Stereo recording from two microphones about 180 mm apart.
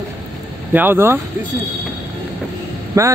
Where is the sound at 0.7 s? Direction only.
10° right (ahead or behind).